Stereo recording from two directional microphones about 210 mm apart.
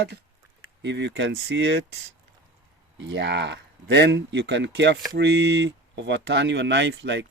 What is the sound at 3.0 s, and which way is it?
Speech, 55° right (ahead or behind).